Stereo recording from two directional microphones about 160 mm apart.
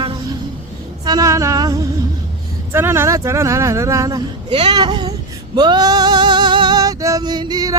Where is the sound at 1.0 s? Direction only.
20° right (ahead or behind).